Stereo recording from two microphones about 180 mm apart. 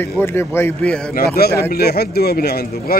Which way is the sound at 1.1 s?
60° left (ahead or behind).